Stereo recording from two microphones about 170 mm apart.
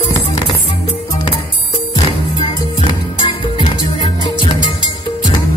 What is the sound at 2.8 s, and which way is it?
Music, 30° left (ahead or behind).